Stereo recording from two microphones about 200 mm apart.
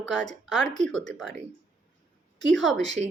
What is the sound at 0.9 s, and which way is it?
Speech, 65° right (ahead or behind).